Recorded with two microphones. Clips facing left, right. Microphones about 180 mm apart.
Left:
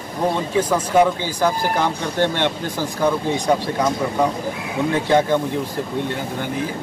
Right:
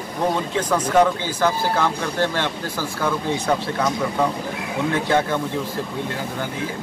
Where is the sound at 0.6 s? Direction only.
10° left (ahead or behind).